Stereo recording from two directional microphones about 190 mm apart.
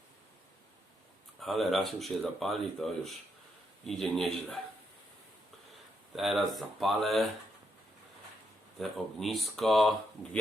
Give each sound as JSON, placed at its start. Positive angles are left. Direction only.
{"t": 1.4, "sound": "speech", "side_deg": 0}
{"t": 6.1, "sound": "speech", "side_deg": 0}
{"t": 8.8, "sound": "speech", "side_deg": 0}